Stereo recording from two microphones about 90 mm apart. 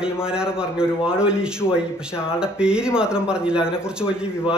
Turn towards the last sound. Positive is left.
turn(degrees=-10)  # may be behind; listen again after turning